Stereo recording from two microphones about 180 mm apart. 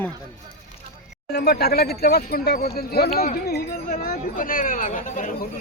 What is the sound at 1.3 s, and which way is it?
Speech, 65° left (ahead or behind).